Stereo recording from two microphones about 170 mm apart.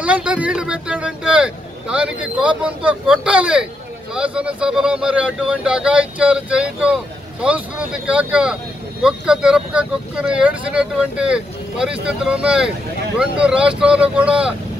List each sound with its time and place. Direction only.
0.0 s speech: 5° right (ahead or behind)